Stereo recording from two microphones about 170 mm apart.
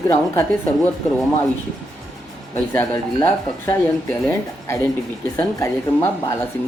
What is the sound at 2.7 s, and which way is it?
Speech, 10° left (ahead or behind).